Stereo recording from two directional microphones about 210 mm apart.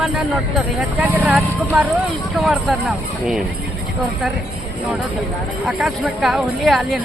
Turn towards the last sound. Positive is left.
turn(degrees=0)  # may be behind; listen again after turning